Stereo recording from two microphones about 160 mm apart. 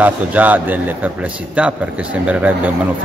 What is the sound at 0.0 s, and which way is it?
A man's voice, 10° right (ahead or behind).